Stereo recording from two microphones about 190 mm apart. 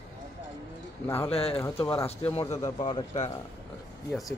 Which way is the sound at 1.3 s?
30° left (ahead or behind).